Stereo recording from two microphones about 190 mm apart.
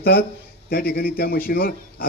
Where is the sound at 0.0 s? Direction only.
55° left (ahead or behind).